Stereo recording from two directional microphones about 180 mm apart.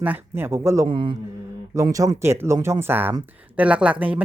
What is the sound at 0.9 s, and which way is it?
A man's voice, 25° right (ahead or behind).